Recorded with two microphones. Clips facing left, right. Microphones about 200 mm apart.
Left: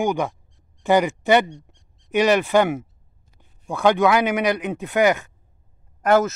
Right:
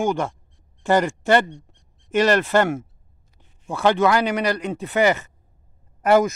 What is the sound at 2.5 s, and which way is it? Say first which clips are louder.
Speech: left 1 dB; 10° left (ahead or behind).